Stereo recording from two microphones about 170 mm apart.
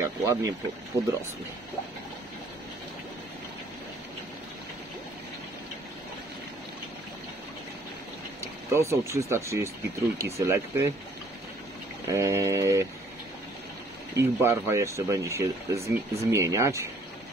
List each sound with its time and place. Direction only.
0.0 s speech: 15° right (ahead or behind)
8.7 s speech: 15° right (ahead or behind)
12.1 s speech: 15° right (ahead or behind)
14.1 s speech: 15° right (ahead or behind)